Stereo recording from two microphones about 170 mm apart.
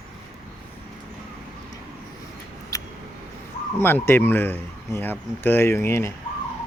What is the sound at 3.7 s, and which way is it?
Speech, 15° left (ahead or behind).